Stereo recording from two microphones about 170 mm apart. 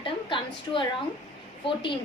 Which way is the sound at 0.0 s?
30° left (ahead or behind).